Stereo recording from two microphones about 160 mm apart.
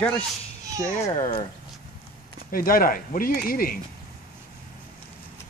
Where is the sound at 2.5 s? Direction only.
65° left (ahead or behind).